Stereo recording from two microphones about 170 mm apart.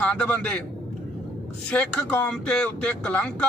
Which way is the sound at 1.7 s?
5° left (ahead or behind).